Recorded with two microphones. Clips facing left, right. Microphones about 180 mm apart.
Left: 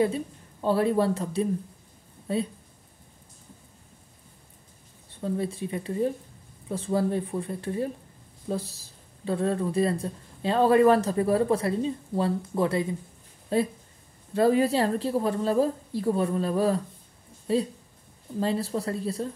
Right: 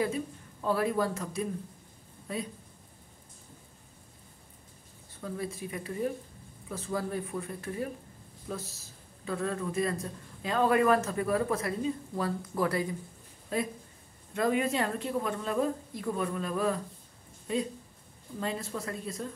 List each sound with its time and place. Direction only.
0.0 s a woman's voice: 30° left (ahead or behind)
5.1 s a woman's voice: 30° left (ahead or behind)